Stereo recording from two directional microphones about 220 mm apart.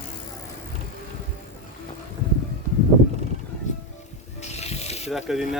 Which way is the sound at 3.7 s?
35° left (ahead or behind).